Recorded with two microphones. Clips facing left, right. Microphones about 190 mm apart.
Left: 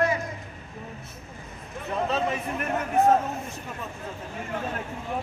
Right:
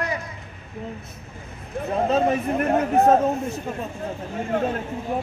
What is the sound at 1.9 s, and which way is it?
Speech, 45° right (ahead or behind).